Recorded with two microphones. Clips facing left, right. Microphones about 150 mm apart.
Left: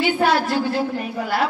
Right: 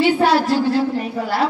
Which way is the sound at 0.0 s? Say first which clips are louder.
Right 3 dB; 30° right (ahead or behind).